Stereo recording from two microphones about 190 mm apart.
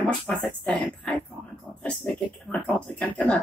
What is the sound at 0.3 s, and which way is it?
Speech, 5° left (ahead or behind).